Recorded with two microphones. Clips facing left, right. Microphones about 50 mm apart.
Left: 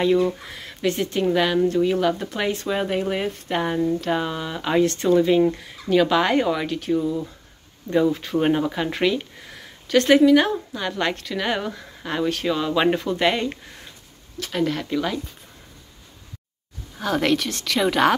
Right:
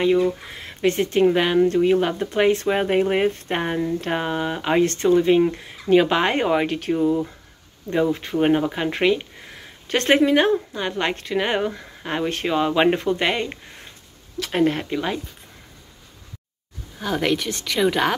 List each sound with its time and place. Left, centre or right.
0.0 s speech: centre
0.7 s speech: right
2.5 s speech: right
7.9 s speech: right
9.8 s speech: right
10.3 s speech: right
13.2 s speech: centre
14.5 s speech: right
14.9 s speech: centre
17.0 s speech: centre